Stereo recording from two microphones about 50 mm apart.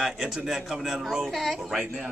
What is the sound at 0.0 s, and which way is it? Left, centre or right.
Speech, centre.